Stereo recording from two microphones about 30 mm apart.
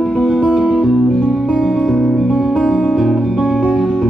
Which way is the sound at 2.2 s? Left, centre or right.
Centre.